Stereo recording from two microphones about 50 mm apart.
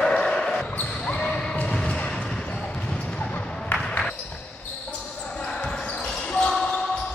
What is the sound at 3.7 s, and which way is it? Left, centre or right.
Basketball bounce, left.